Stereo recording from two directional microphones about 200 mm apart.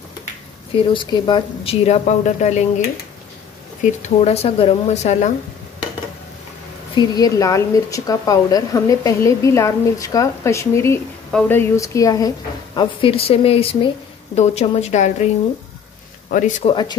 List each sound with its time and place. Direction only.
0.7 s speech: 25° left (ahead or behind)
4.2 s speech: 30° left (ahead or behind)
7.0 s a woman's voice: 20° left (ahead or behind); by 15.2 s 35° left (ahead or behind)
16.3 s speech: 40° left (ahead or behind)
16.6 s speech: 20° left (ahead or behind)